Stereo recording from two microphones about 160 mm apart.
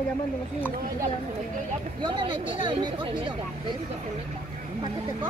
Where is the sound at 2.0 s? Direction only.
30° right (ahead or behind).